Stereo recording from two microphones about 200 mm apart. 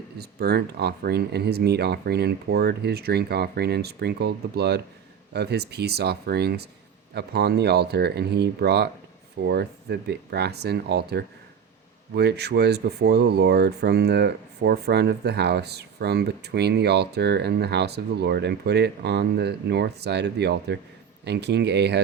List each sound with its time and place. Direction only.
0.2 s speech: 50° right (ahead or behind)